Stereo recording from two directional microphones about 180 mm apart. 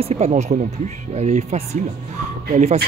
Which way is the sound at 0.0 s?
40° right (ahead or behind).